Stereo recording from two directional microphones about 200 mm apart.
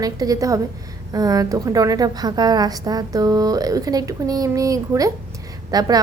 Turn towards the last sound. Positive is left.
turn(degrees=-20)  # may be behind; listen again after turning